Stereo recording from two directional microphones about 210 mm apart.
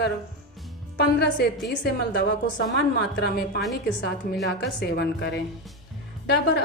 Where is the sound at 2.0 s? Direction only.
55° left (ahead or behind).